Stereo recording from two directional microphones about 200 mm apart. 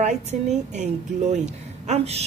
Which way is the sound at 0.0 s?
35° right (ahead or behind).